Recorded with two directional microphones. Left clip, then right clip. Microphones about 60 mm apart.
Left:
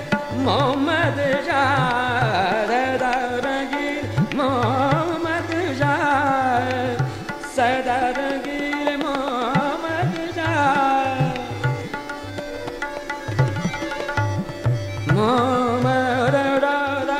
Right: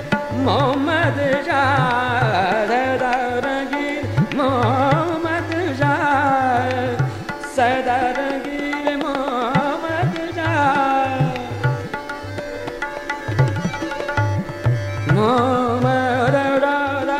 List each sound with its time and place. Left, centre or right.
0.1 s carnatic music: left
4.4 s carnatic music: left
7.5 s music: centre
8.3 s music: left
9.3 s carnatic music: left
10.4 s music: centre; by 11.7 s left
15.0 s music: left